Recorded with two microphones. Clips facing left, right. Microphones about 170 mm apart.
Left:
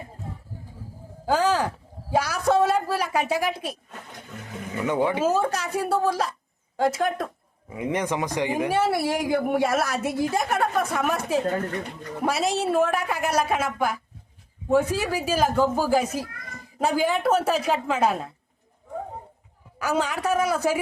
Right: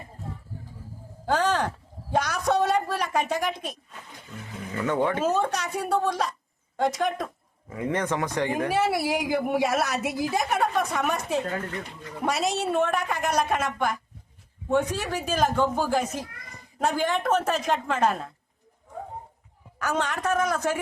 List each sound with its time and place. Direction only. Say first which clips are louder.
1.3 s a sound: left 2 dB; 10° left (ahead or behind)
4.8 s a woman's voice: left 2 dB; 10° left (ahead or behind)
7.7 s a woman's voice: left 1 dB; 15° left (ahead or behind)
8.7 s a woman's voice: left 2 dB; centre (ahead or behind)
11.4 s a woman's voice: left 5 dB; 40° left (ahead or behind)
12.2 s a woman's voice: left 2 dB; centre (ahead or behind)
19.8 s a woman's voice: left 2 dB; 10° left (ahead or behind)